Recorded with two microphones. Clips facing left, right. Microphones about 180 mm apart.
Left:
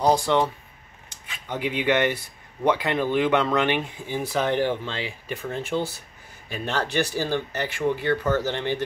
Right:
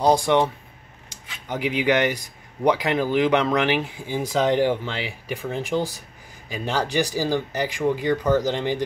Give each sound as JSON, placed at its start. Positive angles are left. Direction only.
{"t": 0.0, "sound": "speech", "side_deg": -15}
{"t": 1.5, "sound": "speech", "side_deg": -10}